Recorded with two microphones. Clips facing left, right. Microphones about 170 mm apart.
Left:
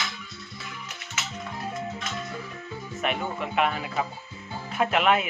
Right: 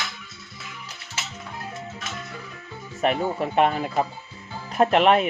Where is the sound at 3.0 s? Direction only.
35° right (ahead or behind).